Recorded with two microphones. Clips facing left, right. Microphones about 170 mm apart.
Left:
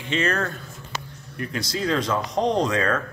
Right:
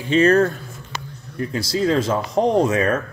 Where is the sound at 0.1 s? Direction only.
35° right (ahead or behind).